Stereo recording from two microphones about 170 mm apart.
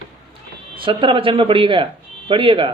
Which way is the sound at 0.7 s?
30° right (ahead or behind).